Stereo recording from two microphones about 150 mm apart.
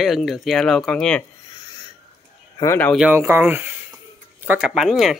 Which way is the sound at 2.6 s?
15° left (ahead or behind).